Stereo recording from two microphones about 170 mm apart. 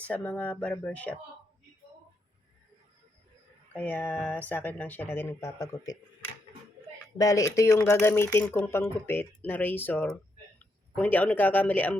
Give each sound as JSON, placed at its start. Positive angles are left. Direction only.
{"t": 0.0, "sound": "speech", "side_deg": 10}
{"t": 3.7, "sound": "speech", "side_deg": 10}
{"t": 7.2, "sound": "speech", "side_deg": 20}